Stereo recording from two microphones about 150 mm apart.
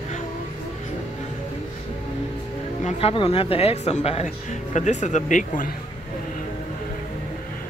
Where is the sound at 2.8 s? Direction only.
40° left (ahead or behind).